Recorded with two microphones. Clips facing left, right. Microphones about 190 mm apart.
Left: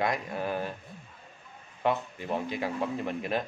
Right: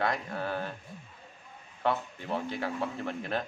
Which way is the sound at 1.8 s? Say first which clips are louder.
Left 2 dB; 15° left (ahead or behind).